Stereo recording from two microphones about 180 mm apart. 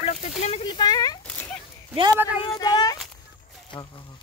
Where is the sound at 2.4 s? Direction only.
25° left (ahead or behind).